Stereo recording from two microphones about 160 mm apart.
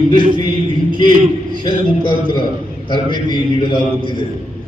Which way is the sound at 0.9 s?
30° left (ahead or behind).